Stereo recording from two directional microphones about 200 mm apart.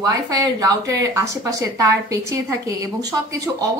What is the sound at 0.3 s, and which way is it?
Speech, 15° right (ahead or behind).